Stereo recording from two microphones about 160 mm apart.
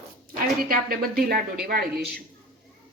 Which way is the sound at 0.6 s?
65° right (ahead or behind).